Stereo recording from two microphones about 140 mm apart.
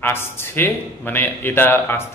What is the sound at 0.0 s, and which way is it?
A man's voice, 15° left (ahead or behind).